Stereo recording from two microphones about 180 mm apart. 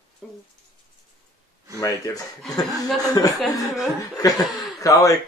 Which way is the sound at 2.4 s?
Centre (ahead or behind).